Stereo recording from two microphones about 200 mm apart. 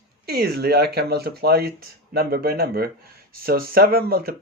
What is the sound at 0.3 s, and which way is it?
Speech, 50° right (ahead or behind).